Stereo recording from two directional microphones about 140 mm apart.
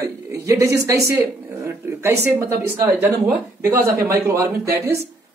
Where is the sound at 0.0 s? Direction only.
20° right (ahead or behind).